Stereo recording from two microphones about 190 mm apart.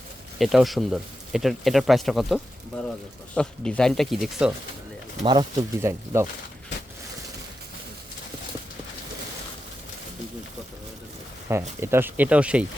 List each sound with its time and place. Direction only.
0.3 s speech: centre (ahead or behind)
5.2 s speech: 20° right (ahead or behind)
11.8 s speech: 10° right (ahead or behind)